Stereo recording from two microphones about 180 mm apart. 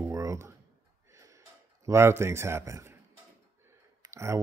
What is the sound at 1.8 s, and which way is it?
A man's voice, 15° right (ahead or behind).